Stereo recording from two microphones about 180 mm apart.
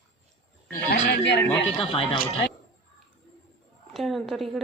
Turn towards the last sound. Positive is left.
turn(degrees=0)  # may be behind; listen again after turning